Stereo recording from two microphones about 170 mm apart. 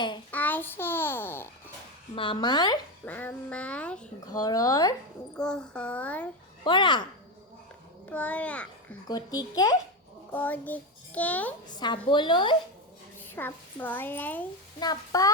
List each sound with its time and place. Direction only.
0.3 s babbling: 10° left (ahead or behind)
2.1 s speech: 30° left (ahead or behind)
3.0 s a child's voice: 10° left (ahead or behind)
4.3 s speech: 20° left (ahead or behind)
5.4 s a child's voice: 5° left (ahead or behind)
6.7 s speech: 30° left (ahead or behind)
8.1 s a child's voice: 10° left (ahead or behind)
9.0 s speech: 25° left (ahead or behind)
10.3 s a child's voice: 10° left (ahead or behind)
11.8 s speech: 25° left (ahead or behind)
13.1 s a woman's voice: 10° left (ahead or behind)
14.8 s speech: 20° left (ahead or behind)